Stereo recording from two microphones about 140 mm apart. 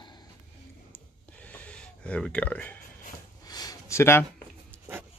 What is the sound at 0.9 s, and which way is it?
Gasp, 10° left (ahead or behind).